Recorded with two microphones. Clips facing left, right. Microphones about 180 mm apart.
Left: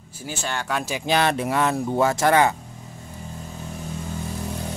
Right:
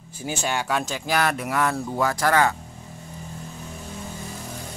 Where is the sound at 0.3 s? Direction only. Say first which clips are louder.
Right 2 dB; 10° right (ahead or behind).